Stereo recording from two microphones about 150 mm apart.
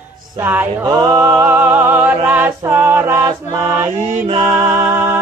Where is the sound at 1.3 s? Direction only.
10° right (ahead or behind).